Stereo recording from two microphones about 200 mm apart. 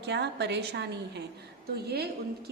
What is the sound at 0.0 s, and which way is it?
A woman's voice, 60° right (ahead or behind).